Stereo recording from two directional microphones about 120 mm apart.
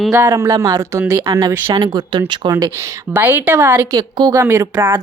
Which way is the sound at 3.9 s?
35° right (ahead or behind).